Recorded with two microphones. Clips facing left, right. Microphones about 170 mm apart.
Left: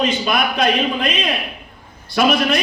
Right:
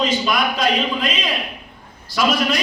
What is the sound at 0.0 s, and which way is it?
A man's voice, 60° left (ahead or behind).